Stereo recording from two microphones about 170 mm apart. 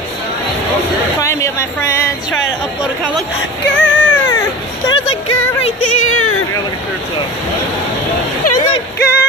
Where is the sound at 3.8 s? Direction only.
10° left (ahead or behind).